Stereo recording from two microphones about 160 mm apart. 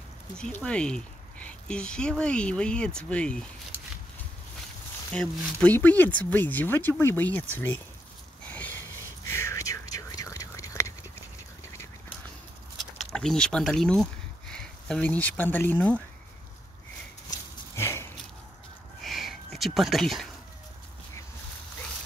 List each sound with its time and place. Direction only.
0.4 s speech: 5° left (ahead or behind)
5.1 s speech: 5° left (ahead or behind)
8.5 s sniff: 10° left (ahead or behind)
9.2 s whispering: 15° left (ahead or behind)
13.0 s speech: 5° left (ahead or behind)
17.3 s a sound: 15° left (ahead or behind)
19.0 s a sound: centre (ahead or behind)